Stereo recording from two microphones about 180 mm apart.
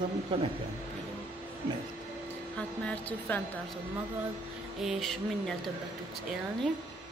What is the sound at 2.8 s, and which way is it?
Speech, 10° left (ahead or behind).